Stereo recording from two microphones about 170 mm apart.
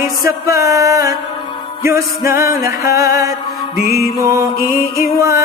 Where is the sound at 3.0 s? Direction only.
60° left (ahead or behind).